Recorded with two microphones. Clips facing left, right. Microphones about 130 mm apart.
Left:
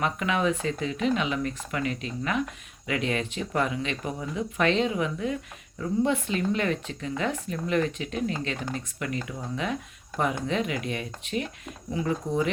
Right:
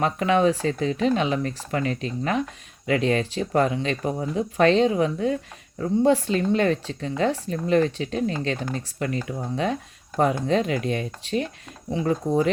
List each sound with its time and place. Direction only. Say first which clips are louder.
0.0 s speech: right 6 dB; 35° right (ahead or behind)